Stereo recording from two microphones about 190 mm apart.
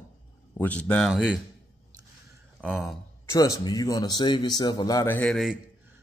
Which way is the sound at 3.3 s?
15° left (ahead or behind).